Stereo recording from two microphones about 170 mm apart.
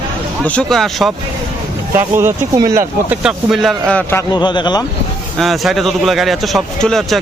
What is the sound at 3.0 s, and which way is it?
A man's voice, 5° right (ahead or behind).